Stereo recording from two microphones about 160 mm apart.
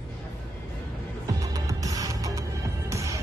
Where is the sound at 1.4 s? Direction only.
20° right (ahead or behind).